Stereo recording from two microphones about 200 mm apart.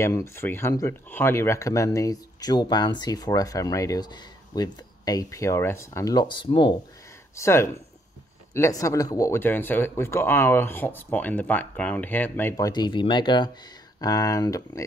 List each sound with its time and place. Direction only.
0.0 s speech: 15° left (ahead or behind)